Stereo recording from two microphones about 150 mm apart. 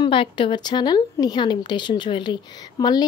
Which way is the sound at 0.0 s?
35° left (ahead or behind).